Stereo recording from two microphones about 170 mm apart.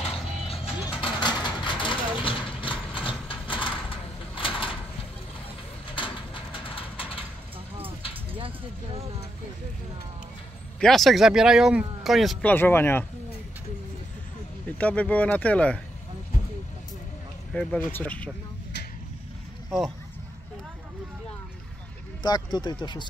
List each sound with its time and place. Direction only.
0.0 s music: 35° left (ahead or behind)
1.0 s vehicle: 25° left (ahead or behind)
5.9 s a sound: 30° left (ahead or behind)
8.4 s a sound: 30° right (ahead or behind)
10.8 s speech: centre (ahead or behind)
14.8 s speech: 10° left (ahead or behind)
17.6 s speech: 5° left (ahead or behind)
22.2 s speech: 25° left (ahead or behind)